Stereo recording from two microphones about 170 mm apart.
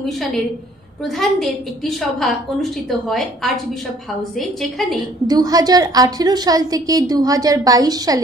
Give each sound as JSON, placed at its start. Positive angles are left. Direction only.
{"t": 0.0, "sound": "a woman's voice", "side_deg": 0}
{"t": 5.2, "sound": "a woman's voice", "side_deg": -20}